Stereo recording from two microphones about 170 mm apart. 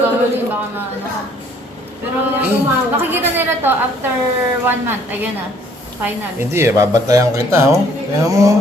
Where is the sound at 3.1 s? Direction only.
10° right (ahead or behind).